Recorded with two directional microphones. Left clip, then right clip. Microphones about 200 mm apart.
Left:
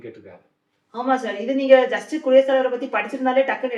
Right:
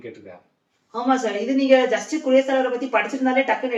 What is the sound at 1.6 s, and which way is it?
Speech, 5° right (ahead or behind).